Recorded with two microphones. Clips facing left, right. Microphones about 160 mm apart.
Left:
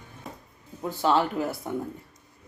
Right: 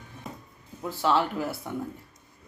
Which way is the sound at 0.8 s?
20° left (ahead or behind).